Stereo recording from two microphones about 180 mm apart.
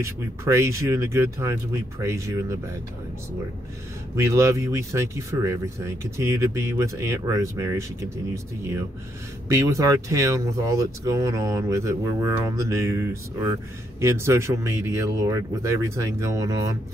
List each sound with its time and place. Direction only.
0.0 s speech: 15° right (ahead or behind)
4.2 s speech: 15° right (ahead or behind)
9.5 s speech: 15° right (ahead or behind)